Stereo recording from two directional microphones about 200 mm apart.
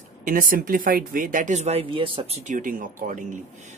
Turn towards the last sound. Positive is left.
turn(degrees=-40)  # may be behind; listen again after turning